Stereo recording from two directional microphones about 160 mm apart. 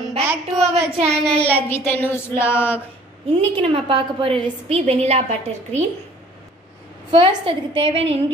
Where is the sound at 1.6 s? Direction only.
15° left (ahead or behind).